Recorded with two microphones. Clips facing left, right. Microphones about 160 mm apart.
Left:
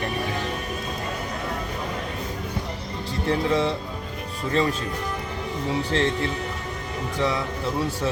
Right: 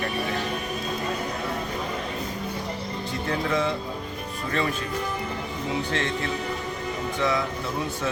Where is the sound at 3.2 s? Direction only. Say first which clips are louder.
Left 3 dB; 30° left (ahead or behind).